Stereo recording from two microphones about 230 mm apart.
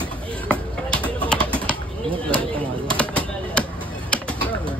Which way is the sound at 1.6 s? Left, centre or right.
Right.